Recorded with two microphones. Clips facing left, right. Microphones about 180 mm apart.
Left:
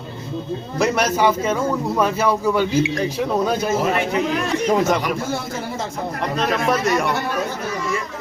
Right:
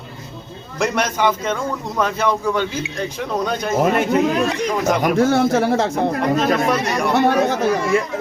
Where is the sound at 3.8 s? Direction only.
50° right (ahead or behind).